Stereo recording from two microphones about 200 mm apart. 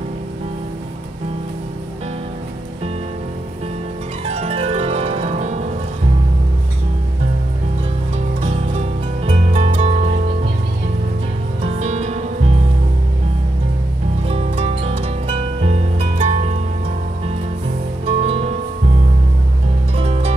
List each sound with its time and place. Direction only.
4.3 s harp: 30° right (ahead or behind)
9.2 s music: 30° right (ahead or behind)
11.6 s music: 30° right (ahead or behind)
14.2 s music: 30° right (ahead or behind)
18.0 s music: 30° right (ahead or behind)
20.0 s music: 30° right (ahead or behind)